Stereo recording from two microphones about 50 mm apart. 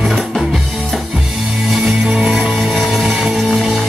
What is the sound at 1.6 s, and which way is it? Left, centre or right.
Music, centre.